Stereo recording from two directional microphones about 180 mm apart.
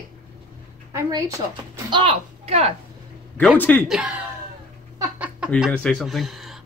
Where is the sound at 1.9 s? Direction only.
30° right (ahead or behind).